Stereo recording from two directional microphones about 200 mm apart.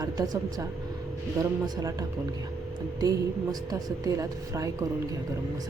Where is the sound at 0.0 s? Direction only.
20° right (ahead or behind).